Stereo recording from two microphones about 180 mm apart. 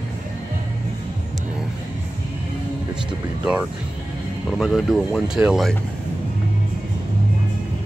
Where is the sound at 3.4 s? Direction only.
5° right (ahead or behind).